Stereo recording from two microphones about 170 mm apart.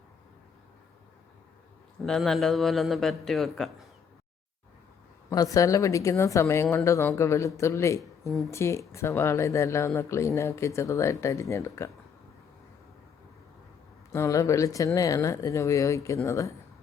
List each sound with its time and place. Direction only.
2.0 s a man's voice: centre (ahead or behind)
5.3 s a woman's voice: 20° left (ahead or behind)
14.1 s speech: 20° left (ahead or behind)